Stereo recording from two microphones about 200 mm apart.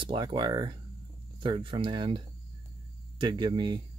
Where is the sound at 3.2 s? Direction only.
25° right (ahead or behind).